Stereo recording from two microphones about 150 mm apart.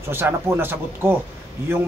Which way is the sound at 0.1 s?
15° right (ahead or behind).